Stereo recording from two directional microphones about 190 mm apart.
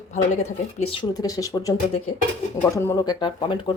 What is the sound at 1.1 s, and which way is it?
Speech, 20° left (ahead or behind).